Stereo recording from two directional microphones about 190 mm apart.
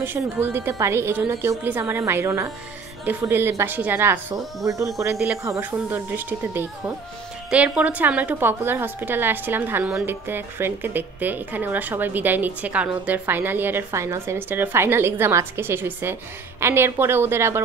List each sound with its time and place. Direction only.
0.0 s a woman's voice: 10° right (ahead or behind)
5.1 s a woman's voice: 5° right (ahead or behind)